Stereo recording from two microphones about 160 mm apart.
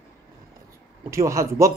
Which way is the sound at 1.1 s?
20° right (ahead or behind).